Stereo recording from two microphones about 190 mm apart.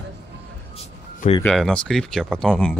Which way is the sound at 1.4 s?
5° left (ahead or behind).